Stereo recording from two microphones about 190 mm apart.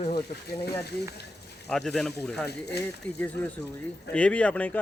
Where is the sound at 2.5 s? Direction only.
60° left (ahead or behind).